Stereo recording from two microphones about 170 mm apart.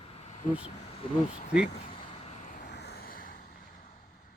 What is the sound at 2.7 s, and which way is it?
Vehicle, 75° left (ahead or behind).